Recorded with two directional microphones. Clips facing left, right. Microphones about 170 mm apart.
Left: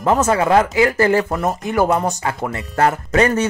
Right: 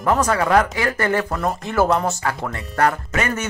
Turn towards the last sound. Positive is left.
turn(degrees=35)  # may be behind; listen again after turning